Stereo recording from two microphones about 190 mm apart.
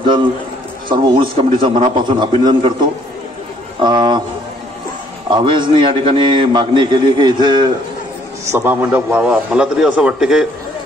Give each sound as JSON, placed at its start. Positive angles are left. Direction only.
{"t": 0.8, "sound": "a man's voice", "side_deg": -25}
{"t": 5.3, "sound": "a man's voice", "side_deg": -25}
{"t": 8.5, "sound": "a man's voice", "side_deg": -10}